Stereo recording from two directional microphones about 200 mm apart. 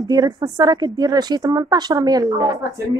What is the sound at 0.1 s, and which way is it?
A woman's voice, 20° right (ahead or behind).